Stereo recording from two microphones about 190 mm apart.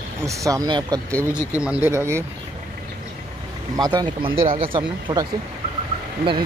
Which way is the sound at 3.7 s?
20° right (ahead or behind).